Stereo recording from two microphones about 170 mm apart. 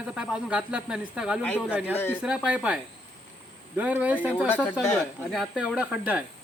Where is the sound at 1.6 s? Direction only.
10° right (ahead or behind).